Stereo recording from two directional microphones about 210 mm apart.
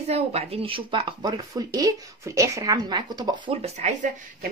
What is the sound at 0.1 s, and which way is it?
Speech, 30° right (ahead or behind).